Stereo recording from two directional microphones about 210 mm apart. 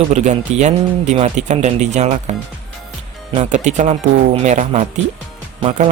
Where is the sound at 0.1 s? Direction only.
35° right (ahead or behind).